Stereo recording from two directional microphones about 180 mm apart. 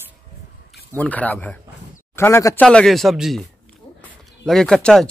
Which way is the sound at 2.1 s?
15° left (ahead or behind).